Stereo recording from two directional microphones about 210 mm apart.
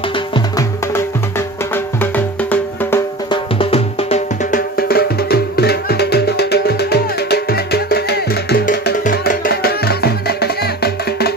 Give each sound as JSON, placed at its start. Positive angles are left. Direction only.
{"t": 0.3, "sound": "music", "side_deg": 15}
{"t": 2.1, "sound": "music", "side_deg": 10}
{"t": 3.3, "sound": "music", "side_deg": 25}
{"t": 4.7, "sound": "music", "side_deg": 45}